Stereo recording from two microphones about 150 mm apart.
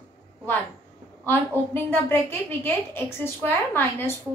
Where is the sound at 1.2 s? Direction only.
15° left (ahead or behind).